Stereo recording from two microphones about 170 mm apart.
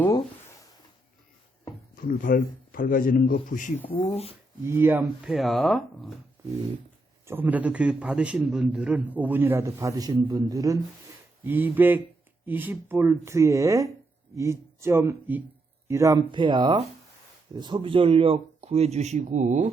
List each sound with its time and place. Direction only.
2.0 s a man's voice: 55° left (ahead or behind)
4.1 s speech: 35° left (ahead or behind)
4.6 s speech: 15° right (ahead or behind)
7.3 s a man's voice: 10° right (ahead or behind); by 19.7 s 45° right (ahead or behind)